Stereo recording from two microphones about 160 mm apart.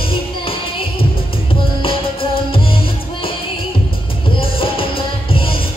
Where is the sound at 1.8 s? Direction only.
35° left (ahead or behind).